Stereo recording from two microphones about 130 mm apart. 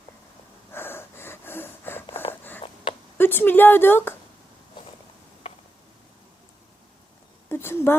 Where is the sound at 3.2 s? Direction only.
15° left (ahead or behind).